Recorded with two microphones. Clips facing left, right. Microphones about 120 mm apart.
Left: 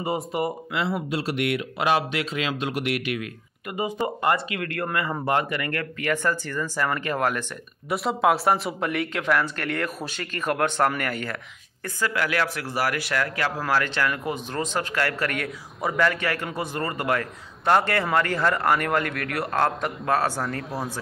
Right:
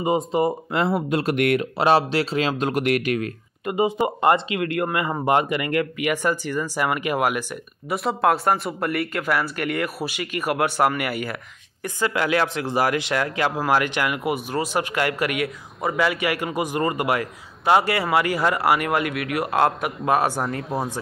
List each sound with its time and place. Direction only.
0.0 s a man's voice: 20° right (ahead or behind)
0.7 s speech: 50° right (ahead or behind)
1.8 s speech: 35° right (ahead or behind)
3.6 s a man's voice: 20° right (ahead or behind)
7.9 s speech: centre (ahead or behind)
11.8 s a man's voice: 20° right (ahead or behind)
20.5 s speech: centre (ahead or behind)